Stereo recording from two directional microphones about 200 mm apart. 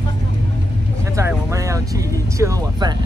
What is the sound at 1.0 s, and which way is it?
Speech, 15° right (ahead or behind).